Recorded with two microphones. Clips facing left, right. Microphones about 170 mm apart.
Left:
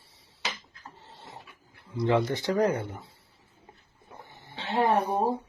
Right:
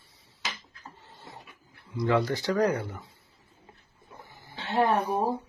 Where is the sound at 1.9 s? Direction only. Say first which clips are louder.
Left 1 dB; 25° left (ahead or behind).